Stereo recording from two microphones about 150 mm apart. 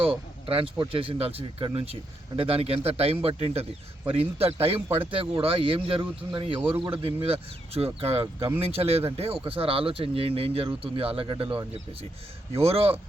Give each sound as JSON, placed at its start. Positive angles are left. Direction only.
{"t": 0.0, "sound": "speech", "side_deg": -40}
{"t": 8.2, "sound": "speech", "side_deg": -30}
{"t": 8.6, "sound": "speech", "side_deg": -40}